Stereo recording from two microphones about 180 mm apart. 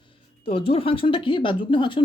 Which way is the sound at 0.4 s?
30° left (ahead or behind).